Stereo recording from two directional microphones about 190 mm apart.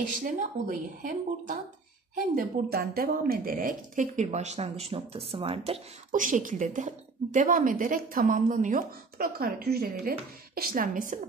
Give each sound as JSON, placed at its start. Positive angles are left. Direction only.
{"t": 0.2, "sound": "speech", "side_deg": -45}
{"t": 6.1, "sound": "speech", "side_deg": -45}